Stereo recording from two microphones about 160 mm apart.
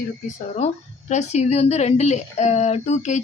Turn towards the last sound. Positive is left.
turn(degrees=45)  # may be behind; listen again after turning